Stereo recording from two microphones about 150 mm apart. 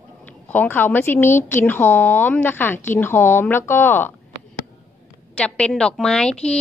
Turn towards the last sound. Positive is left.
turn(degrees=5)  # may be behind; listen again after turning